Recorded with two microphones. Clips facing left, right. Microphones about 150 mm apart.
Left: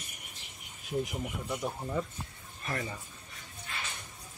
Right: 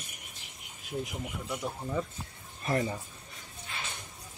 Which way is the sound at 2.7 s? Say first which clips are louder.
Right 7 dB; 25° right (ahead or behind).